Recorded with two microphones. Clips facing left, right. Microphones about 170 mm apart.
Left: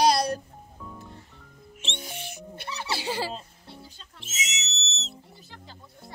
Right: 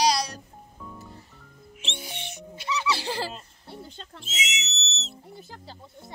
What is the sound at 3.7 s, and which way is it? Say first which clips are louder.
Speech: right 5 dB; 55° right (ahead or behind).